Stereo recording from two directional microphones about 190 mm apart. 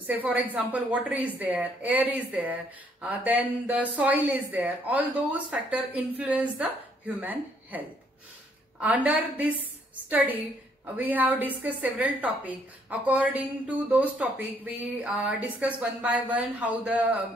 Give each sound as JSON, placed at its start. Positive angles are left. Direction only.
{"t": 0.0, "sound": "a woman's voice", "side_deg": -10}
{"t": 8.8, "sound": "a woman's voice", "side_deg": -10}